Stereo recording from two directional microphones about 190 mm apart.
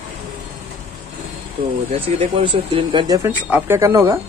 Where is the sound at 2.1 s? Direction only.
25° right (ahead or behind).